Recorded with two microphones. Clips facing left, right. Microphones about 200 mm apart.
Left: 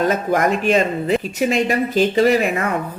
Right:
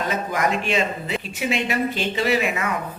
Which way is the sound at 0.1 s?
45° left (ahead or behind).